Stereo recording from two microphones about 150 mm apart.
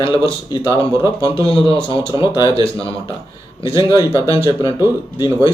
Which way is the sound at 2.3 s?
30° left (ahead or behind).